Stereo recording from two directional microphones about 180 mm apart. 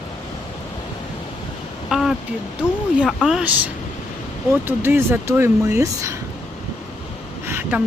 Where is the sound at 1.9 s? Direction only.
Centre (ahead or behind).